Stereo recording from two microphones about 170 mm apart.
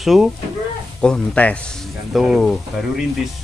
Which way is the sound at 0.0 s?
Centre (ahead or behind).